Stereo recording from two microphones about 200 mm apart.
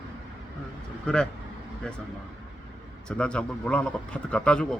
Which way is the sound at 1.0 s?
5° left (ahead or behind).